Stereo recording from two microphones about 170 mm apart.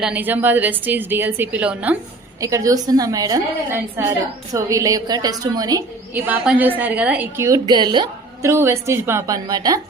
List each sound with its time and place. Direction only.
0.0 s a woman's voice: 10° right (ahead or behind)
2.4 s a woman's voice: 20° right (ahead or behind)
6.2 s a woman's voice: 10° right (ahead or behind)